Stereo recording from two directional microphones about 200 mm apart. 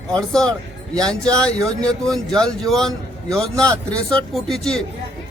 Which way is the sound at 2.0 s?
5° left (ahead or behind).